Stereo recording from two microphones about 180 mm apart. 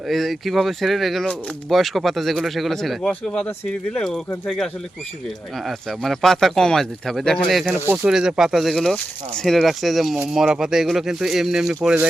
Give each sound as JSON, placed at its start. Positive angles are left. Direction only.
{"t": 0.1, "sound": "speech", "side_deg": 0}